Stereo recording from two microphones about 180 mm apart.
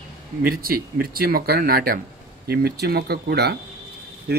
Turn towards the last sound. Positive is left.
turn(degrees=-65)  # may be behind; listen again after turning